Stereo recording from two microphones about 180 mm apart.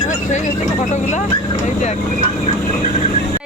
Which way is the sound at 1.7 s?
40° left (ahead or behind).